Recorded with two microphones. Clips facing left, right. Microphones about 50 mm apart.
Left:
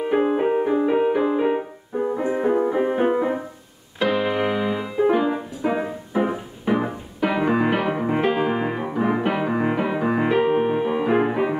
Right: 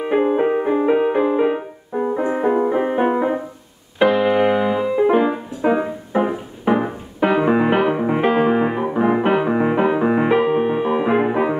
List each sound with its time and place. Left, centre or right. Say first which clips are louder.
0.2 s music: right 2 dB; centre
4.1 s keyboard: right 4 dB; centre
5.6 s music: right 9 dB; centre
8.2 s piano: right 5 dB; right
8.5 s music: right 5 dB; centre
10.4 s music: right 2 dB; centre
10.8 s music: right 2 dB; centre